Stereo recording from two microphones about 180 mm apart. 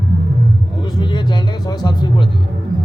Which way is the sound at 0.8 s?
25° left (ahead or behind).